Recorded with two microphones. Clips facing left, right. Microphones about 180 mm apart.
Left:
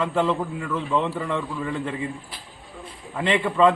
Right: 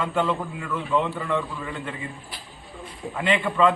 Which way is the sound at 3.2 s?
30° left (ahead or behind).